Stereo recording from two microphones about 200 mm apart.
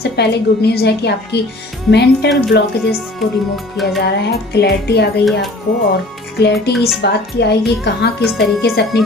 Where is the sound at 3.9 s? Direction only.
55° left (ahead or behind).